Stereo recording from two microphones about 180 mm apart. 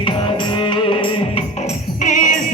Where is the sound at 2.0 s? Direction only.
45° left (ahead or behind).